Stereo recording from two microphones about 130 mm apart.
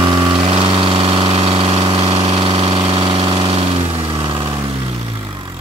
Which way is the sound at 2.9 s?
45° right (ahead or behind).